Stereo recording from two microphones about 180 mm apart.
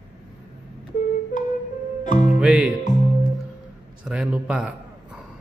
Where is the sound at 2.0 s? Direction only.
45° left (ahead or behind).